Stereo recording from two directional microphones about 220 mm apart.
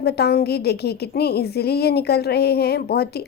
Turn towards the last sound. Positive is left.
turn(degrees=45)  # may be behind; listen again after turning